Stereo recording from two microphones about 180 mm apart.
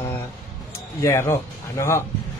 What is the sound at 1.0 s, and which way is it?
Speech, 15° left (ahead or behind).